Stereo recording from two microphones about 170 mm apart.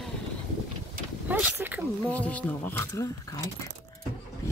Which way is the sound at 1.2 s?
10° right (ahead or behind).